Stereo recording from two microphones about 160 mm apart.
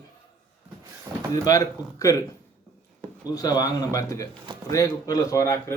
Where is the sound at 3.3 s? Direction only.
25° left (ahead or behind).